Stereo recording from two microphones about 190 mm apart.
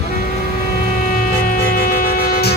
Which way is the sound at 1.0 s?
45° left (ahead or behind).